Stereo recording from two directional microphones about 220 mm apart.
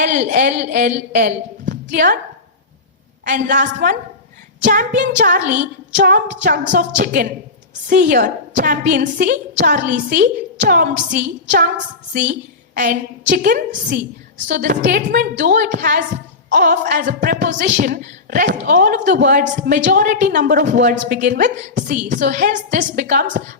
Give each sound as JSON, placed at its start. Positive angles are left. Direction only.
{"t": 0.0, "sound": "speech", "side_deg": -40}
{"t": 3.2, "sound": "a woman's voice", "side_deg": -40}